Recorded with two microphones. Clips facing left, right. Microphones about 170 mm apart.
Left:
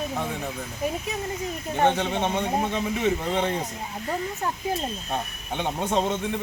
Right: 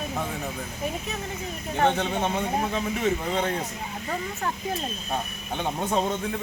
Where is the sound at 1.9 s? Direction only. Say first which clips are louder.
Left 1 dB; 5° left (ahead or behind).